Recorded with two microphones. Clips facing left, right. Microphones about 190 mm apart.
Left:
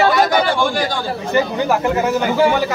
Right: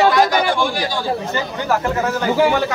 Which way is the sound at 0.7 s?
50° left (ahead or behind).